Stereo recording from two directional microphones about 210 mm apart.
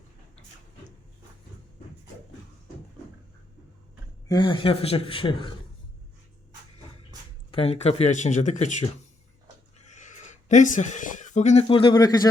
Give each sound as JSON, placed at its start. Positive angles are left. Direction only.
{"t": 4.3, "sound": "speech", "side_deg": 20}
{"t": 7.5, "sound": "speech", "side_deg": 30}